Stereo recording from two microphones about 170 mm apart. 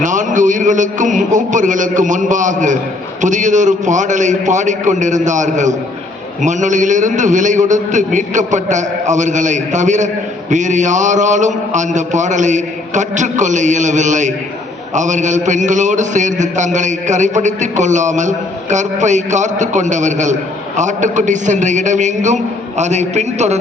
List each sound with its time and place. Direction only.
0.0 s a man's voice: 50° right (ahead or behind)